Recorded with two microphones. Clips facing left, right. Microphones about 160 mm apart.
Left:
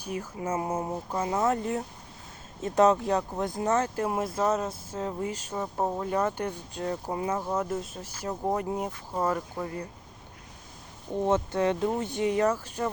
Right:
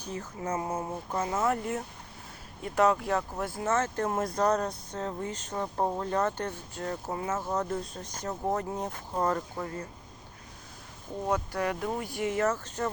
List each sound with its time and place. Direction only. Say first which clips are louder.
0.0 s a sound: left 3 dB; 10° left (ahead or behind)
0.4 s speech: left 2 dB; 25° left (ahead or behind); by 9.8 s 10° left (ahead or behind)
11.3 s speech: left 4 dB; 25° left (ahead or behind)